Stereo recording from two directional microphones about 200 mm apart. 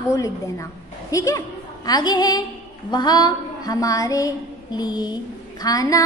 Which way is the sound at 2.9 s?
20° left (ahead or behind).